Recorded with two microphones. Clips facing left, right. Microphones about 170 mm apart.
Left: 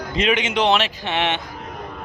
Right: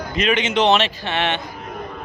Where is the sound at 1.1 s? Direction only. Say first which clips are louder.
Even; 15° left (ahead or behind).